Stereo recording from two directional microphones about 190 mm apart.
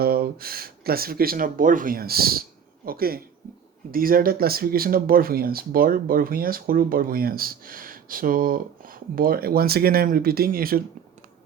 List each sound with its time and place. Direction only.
0.0 s speech: 55° right (ahead or behind)